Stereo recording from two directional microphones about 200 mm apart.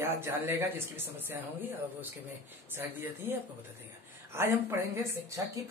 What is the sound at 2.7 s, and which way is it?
Speech, 10° right (ahead or behind).